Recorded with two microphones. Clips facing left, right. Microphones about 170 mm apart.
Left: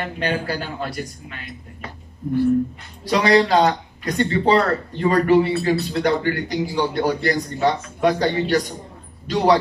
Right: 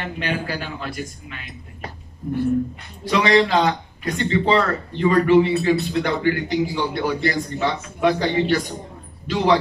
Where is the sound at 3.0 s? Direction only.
40° left (ahead or behind).